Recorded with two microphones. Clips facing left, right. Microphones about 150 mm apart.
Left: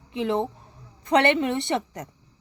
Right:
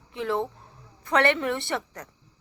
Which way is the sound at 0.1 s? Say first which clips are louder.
Left 3 dB; 20° left (ahead or behind).